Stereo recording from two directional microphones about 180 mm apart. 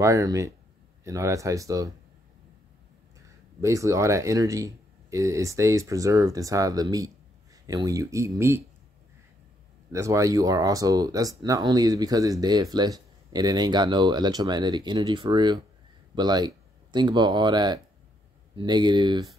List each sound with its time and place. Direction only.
0.0 s speech: 15° right (ahead or behind)
3.6 s speech: 15° right (ahead or behind)
9.9 s speech: 15° right (ahead or behind)